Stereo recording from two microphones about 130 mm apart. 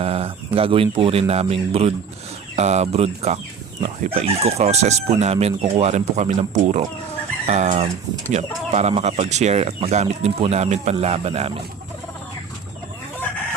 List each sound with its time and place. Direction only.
0.0 s speech: 50° right (ahead or behind)